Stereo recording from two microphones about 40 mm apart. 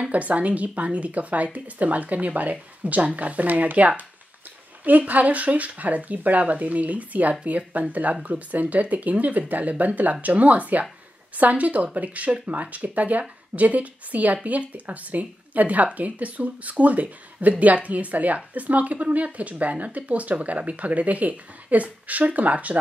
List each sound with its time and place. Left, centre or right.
0.1 s speech: right